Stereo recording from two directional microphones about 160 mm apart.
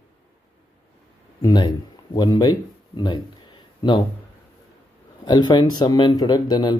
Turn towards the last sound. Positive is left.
turn(degrees=25)  # may be behind; listen again after turning